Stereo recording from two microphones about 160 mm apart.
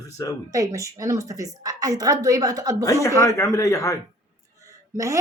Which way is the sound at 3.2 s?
20° left (ahead or behind).